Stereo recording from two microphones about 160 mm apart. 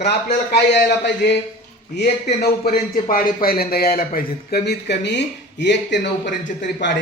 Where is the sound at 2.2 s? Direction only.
80° left.